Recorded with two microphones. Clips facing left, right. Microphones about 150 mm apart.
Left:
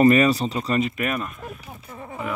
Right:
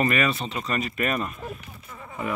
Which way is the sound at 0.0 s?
35° left (ahead or behind).